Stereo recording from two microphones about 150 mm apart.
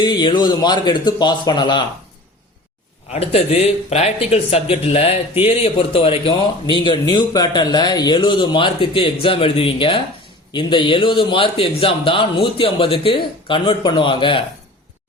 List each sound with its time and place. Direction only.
0.0 s a man's voice: 30° left (ahead or behind)
3.1 s a man's voice: 45° left (ahead or behind)